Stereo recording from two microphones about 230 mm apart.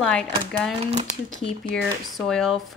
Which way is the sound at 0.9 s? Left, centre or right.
Right.